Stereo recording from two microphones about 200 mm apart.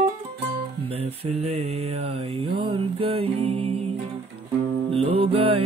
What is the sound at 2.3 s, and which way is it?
Music, 25° right (ahead or behind).